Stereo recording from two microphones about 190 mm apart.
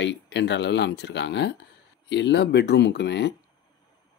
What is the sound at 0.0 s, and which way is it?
Speech, 70° left (ahead or behind).